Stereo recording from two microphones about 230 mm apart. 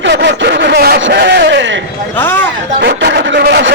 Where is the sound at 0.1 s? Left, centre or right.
Right.